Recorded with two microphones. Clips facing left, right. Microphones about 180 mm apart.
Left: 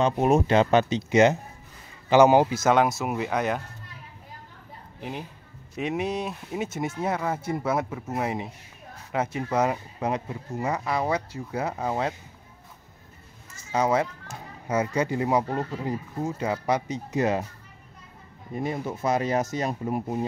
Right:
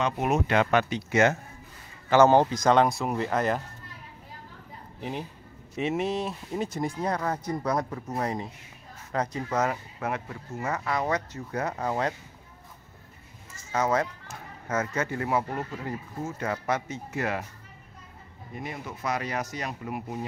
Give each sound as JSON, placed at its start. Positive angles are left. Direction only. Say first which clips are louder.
{"t": 0.0, "sound": "speech", "louder": "left 5 dB", "side_deg": 30}
{"t": 5.8, "sound": "speech", "louder": "even", "side_deg": 0}
{"t": 13.7, "sound": "a child's voice", "louder": "left 2 dB", "side_deg": 10}
{"t": 18.6, "sound": "speech", "louder": "left 7 dB", "side_deg": 25}